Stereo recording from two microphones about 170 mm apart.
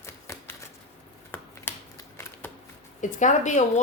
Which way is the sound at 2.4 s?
10° left (ahead or behind).